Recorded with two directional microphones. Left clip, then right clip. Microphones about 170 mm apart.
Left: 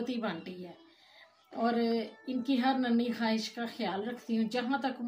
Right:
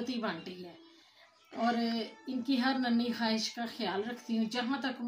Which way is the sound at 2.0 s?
15° left (ahead or behind).